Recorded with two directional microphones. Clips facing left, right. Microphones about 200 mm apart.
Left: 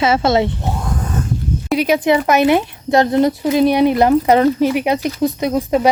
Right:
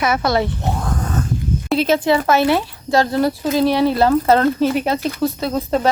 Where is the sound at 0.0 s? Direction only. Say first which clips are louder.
Left 3 dB; 25° left (ahead or behind).